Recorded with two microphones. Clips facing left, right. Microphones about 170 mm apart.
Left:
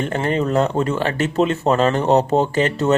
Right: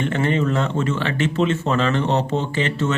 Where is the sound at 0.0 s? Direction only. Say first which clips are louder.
Even; 40° left (ahead or behind).